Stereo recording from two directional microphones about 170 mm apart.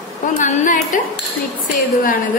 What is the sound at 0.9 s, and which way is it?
Speech, 50° left (ahead or behind).